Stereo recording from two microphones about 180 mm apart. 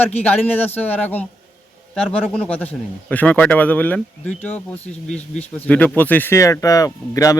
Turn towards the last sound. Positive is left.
turn(degrees=20)  # may be behind; listen again after turning